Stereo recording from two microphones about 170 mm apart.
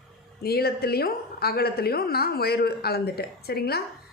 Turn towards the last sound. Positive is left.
turn(degrees=65)  # may be behind; listen again after turning